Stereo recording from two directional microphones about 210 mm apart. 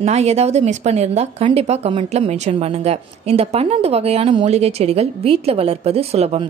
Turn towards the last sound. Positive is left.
turn(degrees=-30)  # may be behind; listen again after turning